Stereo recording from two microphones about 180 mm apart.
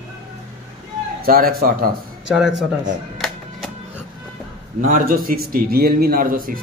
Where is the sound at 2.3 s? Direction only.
Centre (ahead or behind).